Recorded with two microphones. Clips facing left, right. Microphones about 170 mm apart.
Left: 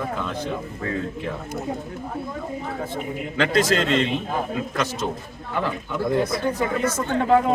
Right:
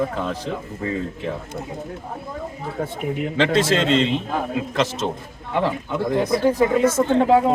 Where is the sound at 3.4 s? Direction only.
25° right (ahead or behind).